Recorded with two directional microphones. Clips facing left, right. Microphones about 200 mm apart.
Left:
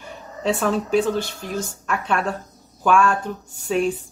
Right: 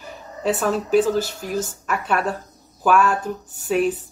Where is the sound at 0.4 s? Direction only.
5° right (ahead or behind).